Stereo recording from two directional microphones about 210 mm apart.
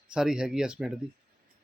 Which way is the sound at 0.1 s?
5° right (ahead or behind).